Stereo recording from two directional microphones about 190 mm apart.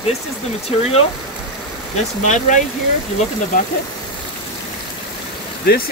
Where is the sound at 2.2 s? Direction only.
40° left (ahead or behind).